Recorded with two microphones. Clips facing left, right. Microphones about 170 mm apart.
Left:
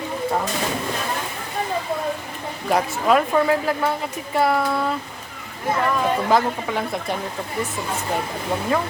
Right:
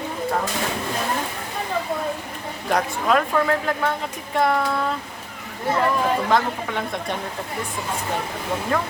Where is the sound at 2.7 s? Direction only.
5° left (ahead or behind).